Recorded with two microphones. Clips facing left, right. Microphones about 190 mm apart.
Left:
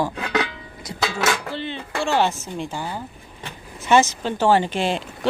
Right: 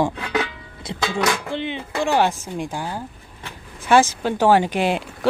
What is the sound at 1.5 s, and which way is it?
Speech, 15° right (ahead or behind).